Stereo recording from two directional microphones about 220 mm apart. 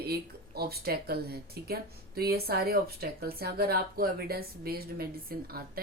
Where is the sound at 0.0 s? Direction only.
45° right (ahead or behind).